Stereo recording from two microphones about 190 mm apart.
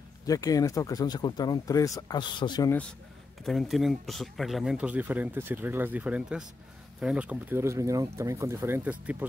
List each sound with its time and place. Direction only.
0.3 s speech: 20° left (ahead or behind)
3.4 s speech: centre (ahead or behind)